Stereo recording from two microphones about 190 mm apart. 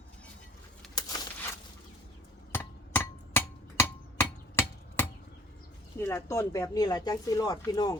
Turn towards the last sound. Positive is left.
turn(degrees=20)  # may be behind; listen again after turning